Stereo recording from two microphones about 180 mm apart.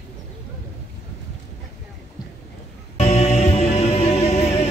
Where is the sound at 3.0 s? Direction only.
35° left (ahead or behind).